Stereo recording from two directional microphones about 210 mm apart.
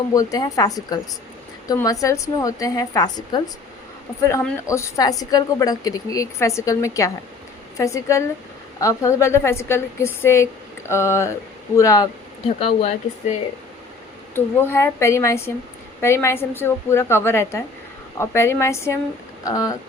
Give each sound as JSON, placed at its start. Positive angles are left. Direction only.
{"t": 0.1, "sound": "a woman's voice", "side_deg": 15}
{"t": 4.7, "sound": "a woman's voice", "side_deg": 15}
{"t": 12.5, "sound": "speech", "side_deg": 30}
{"t": 14.3, "sound": "a woman's voice", "side_deg": 10}